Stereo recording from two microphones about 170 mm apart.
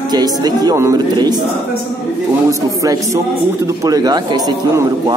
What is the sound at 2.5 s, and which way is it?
A man's voice, 20° right (ahead or behind).